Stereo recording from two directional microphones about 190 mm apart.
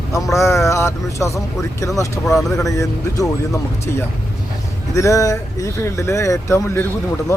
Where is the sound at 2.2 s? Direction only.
Centre (ahead or behind).